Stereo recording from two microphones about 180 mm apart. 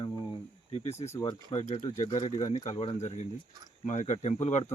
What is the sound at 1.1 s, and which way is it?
Speech, 20° left (ahead or behind).